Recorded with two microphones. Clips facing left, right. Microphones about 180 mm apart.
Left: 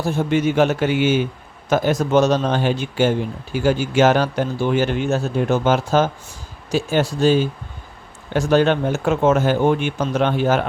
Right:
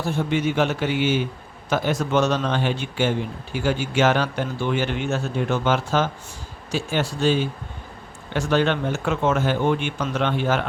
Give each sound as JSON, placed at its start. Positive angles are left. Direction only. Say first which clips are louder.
{"t": 0.0, "sound": "speech", "louder": "left 4 dB", "side_deg": 45}